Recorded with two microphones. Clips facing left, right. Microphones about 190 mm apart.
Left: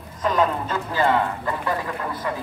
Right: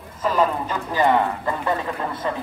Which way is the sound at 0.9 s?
20° right (ahead or behind).